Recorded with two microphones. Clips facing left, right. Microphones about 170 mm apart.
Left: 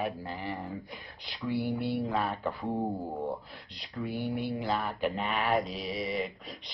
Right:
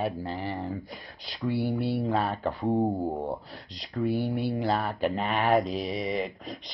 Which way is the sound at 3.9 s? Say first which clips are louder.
Right 6 dB; 35° right (ahead or behind).